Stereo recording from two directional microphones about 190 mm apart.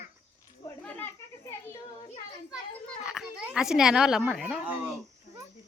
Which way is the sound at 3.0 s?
5° right (ahead or behind).